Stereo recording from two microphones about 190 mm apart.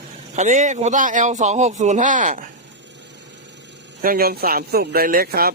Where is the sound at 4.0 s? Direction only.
50° right (ahead or behind).